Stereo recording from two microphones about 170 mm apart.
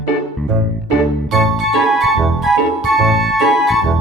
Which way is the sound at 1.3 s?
Centre (ahead or behind).